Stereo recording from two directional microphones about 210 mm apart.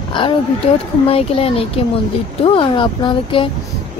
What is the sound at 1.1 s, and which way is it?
Speech, 30° left (ahead or behind).